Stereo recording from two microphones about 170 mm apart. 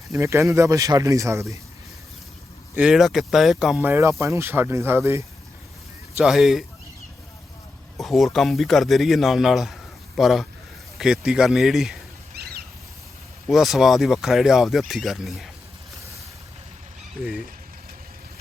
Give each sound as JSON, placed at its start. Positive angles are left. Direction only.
{"t": 0.1, "sound": "speech", "side_deg": -15}
{"t": 2.7, "sound": "speech", "side_deg": 0}
{"t": 6.2, "sound": "speech", "side_deg": 0}
{"t": 7.9, "sound": "speech", "side_deg": 0}
{"t": 12.3, "sound": "a sound", "side_deg": -70}
{"t": 13.5, "sound": "speech", "side_deg": 0}